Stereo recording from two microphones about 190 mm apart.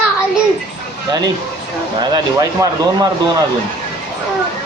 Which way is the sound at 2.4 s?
20° right (ahead or behind).